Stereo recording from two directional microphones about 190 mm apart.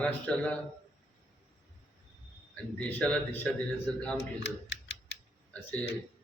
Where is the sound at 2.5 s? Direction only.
5° left (ahead or behind).